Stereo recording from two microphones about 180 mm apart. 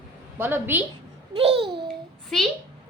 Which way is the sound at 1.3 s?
30° right (ahead or behind).